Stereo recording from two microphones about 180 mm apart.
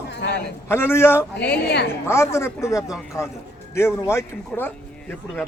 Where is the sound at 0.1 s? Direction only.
70° left (ahead or behind).